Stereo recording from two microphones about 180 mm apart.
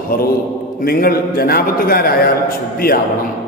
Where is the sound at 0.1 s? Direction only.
55° left (ahead or behind).